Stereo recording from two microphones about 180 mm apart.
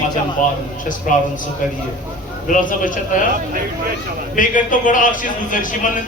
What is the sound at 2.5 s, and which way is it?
Speech, 45° left (ahead or behind).